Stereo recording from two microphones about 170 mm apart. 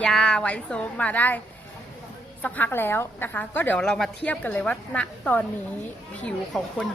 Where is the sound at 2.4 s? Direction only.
10° left (ahead or behind).